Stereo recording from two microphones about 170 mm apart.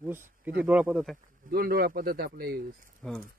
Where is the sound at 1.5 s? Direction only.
60° right (ahead or behind).